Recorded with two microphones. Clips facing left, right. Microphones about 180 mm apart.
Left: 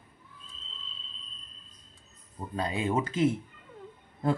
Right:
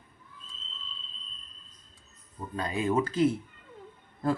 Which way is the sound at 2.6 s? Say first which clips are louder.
Right 1 dB; 30° left (ahead or behind).